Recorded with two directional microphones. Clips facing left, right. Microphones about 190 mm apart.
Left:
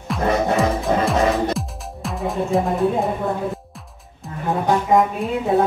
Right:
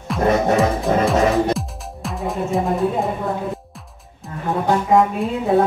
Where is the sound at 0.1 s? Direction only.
Centre (ahead or behind).